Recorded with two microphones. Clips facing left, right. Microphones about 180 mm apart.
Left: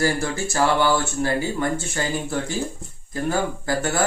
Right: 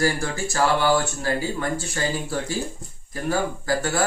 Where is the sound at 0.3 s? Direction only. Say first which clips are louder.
Left 1 dB; 20° left (ahead or behind).